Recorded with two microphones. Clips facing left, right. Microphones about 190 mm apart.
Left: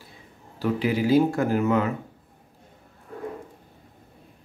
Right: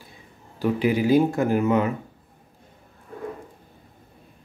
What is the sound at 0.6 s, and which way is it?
Speech, 15° right (ahead or behind).